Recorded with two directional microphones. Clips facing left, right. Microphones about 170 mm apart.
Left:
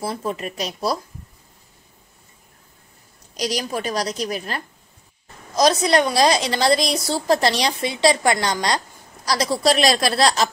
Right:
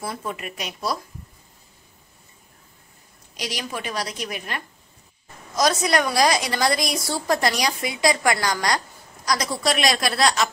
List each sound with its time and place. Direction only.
0.0 s a woman's voice: 35° left (ahead or behind)
3.3 s a woman's voice: 40° left (ahead or behind)